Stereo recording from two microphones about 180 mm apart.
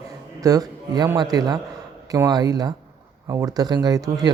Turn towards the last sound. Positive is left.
turn(degrees=-20)  # may be behind; listen again after turning